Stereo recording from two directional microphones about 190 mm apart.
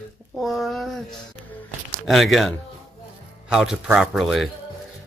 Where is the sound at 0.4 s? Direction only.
Centre (ahead or behind).